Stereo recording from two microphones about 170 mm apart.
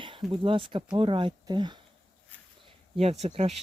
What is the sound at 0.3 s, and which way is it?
Speech, 30° right (ahead or behind).